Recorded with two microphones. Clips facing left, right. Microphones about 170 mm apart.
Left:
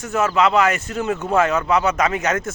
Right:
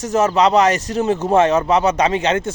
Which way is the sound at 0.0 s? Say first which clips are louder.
Right 3 dB; 40° right (ahead or behind).